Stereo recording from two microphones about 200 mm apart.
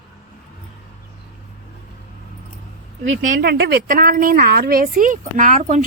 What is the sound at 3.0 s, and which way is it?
A woman's voice, 45° right (ahead or behind).